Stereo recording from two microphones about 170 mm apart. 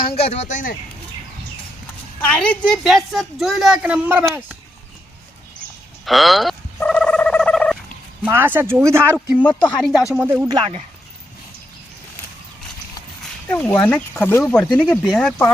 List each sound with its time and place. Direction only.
0.2 s speech: 40° left (ahead or behind)
2.2 s speech: 5° left (ahead or behind); by 4.4 s 10° right (ahead or behind)
6.1 s a sound: centre (ahead or behind)
8.2 s speech: 10° right (ahead or behind)
9.6 s speech: centre (ahead or behind)
10.2 s speech: 10° right (ahead or behind)
10.5 s speech: 30° right (ahead or behind)
13.5 s speech: 10° left (ahead or behind)